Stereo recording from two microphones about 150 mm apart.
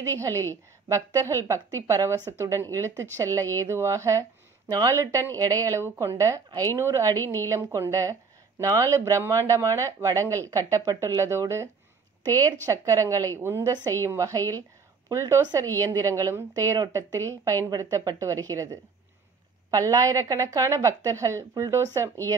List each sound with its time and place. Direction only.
0.8 s a woman's voice: 20° right (ahead or behind)